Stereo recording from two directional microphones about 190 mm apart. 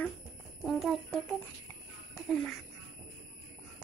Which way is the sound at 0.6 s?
Centre (ahead or behind).